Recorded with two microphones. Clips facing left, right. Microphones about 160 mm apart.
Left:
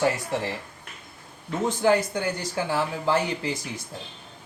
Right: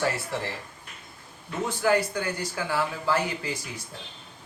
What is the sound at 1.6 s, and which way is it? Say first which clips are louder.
Speech: left 2 dB; 25° left (ahead or behind).